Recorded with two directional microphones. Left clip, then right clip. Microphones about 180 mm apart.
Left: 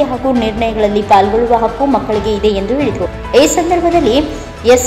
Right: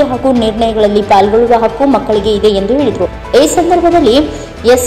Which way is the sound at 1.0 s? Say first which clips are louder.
Even; 30° right (ahead or behind).